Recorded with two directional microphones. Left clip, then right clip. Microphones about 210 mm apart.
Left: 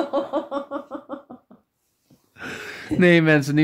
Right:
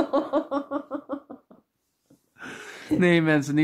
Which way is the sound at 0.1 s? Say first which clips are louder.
Even; 50° right (ahead or behind).